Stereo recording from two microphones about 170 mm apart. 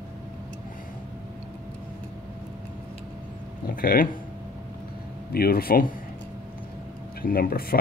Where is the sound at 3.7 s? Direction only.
60° left (ahead or behind).